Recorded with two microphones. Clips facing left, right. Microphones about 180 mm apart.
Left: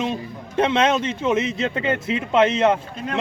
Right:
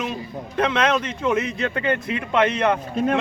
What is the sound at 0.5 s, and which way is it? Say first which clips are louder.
Speech: left 2 dB; 25° left (ahead or behind).